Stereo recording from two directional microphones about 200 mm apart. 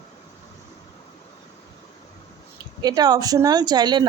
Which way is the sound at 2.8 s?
20° right (ahead or behind).